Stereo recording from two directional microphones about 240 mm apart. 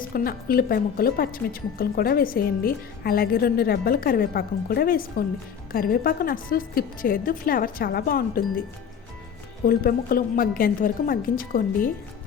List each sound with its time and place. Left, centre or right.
0.0 s a woman's voice: left
9.6 s a woman's voice: left